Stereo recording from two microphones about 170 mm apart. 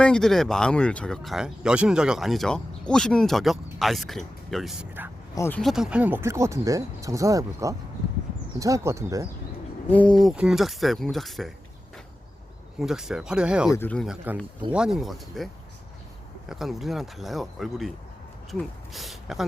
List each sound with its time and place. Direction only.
0.0 s speech: 5° left (ahead or behind)
5.3 s speech: 15° left (ahead or behind)
5.5 s speech: centre (ahead or behind); by 9.2 s 15° right (ahead or behind)
9.9 s speech: 5° left (ahead or behind)
12.8 s speech: 5° right (ahead or behind)
13.7 s speech: 10° left (ahead or behind)
14.0 s speech: 5° right (ahead or behind)
16.5 s speech: centre (ahead or behind)